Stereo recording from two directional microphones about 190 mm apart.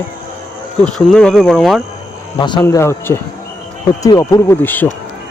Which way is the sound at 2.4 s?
25° left (ahead or behind).